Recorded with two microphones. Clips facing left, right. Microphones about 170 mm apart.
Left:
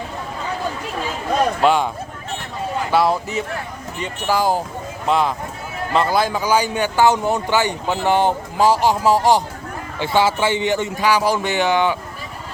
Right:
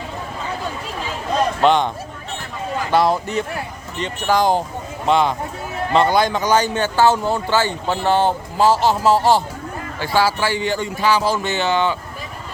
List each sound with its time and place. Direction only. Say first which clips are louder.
1.6 s speech: right 2 dB; 5° left (ahead or behind)
2.9 s speech: right 1 dB; 5° left (ahead or behind)